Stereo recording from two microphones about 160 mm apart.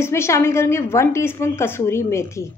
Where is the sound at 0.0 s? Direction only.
15° left (ahead or behind).